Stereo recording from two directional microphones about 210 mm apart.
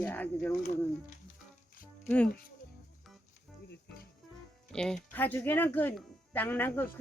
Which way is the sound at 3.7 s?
50° left (ahead or behind).